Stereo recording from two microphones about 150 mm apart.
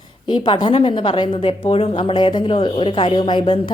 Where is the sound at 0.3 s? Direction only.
30° left (ahead or behind).